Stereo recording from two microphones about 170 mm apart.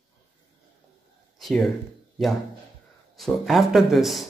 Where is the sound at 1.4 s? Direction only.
Centre (ahead or behind).